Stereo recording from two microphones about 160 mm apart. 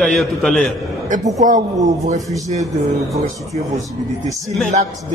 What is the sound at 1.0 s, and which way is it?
A woman's voice, 50° right (ahead or behind).